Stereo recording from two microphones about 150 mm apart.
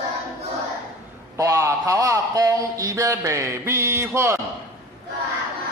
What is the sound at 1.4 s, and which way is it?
A man's voice, 20° right (ahead or behind).